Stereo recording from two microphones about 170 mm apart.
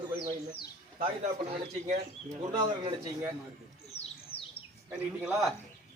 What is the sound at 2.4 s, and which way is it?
Speech, 30° right (ahead or behind).